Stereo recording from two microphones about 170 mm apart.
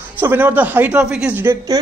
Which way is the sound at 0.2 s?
10° right (ahead or behind).